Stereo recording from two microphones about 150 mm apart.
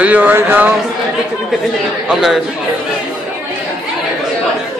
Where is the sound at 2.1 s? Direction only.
5° right (ahead or behind).